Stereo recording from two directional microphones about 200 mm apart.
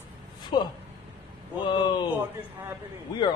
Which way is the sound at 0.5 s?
20° left (ahead or behind).